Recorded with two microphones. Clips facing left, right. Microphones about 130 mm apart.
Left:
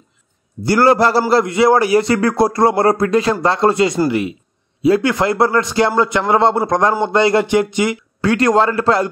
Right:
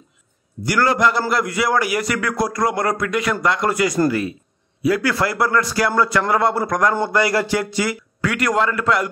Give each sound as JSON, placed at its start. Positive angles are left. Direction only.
{"t": 0.7, "sound": "a man's voice", "side_deg": 30}